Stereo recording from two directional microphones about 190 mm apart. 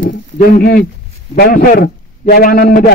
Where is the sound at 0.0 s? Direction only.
50° left (ahead or behind).